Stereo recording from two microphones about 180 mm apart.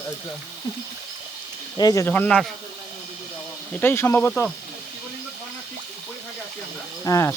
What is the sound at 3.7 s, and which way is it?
Speech, 10° left (ahead or behind).